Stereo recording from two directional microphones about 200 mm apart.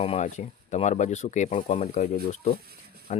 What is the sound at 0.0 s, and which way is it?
Speech, 30° left (ahead or behind).